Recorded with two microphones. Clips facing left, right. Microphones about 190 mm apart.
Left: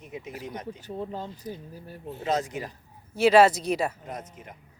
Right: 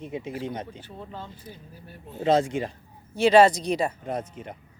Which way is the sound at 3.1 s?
5° left (ahead or behind).